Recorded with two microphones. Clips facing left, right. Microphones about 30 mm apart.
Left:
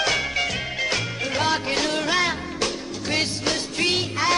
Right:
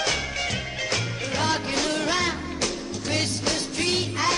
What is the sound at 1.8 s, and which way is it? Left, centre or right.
Music, centre.